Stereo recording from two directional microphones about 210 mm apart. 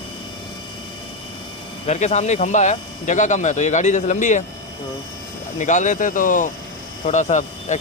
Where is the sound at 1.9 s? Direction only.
30° left (ahead or behind).